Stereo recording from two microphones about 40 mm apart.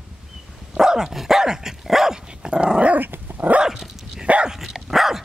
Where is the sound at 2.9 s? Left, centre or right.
Right.